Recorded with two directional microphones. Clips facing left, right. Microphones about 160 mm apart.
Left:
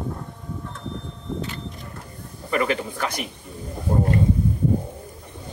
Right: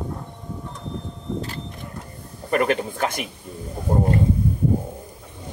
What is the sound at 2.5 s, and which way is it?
Speech, 45° right (ahead or behind).